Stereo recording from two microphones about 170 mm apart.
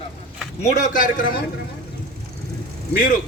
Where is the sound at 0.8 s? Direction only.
50° left (ahead or behind).